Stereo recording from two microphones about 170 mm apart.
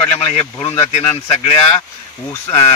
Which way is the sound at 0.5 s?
15° left (ahead or behind).